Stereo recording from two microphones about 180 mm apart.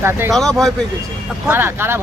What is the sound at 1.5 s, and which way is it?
Speech, 10° right (ahead or behind).